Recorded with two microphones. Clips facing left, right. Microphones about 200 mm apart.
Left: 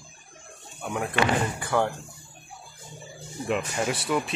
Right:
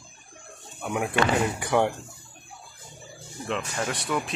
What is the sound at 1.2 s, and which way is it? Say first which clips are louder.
Speech: right 1 dB; 15° right (ahead or behind).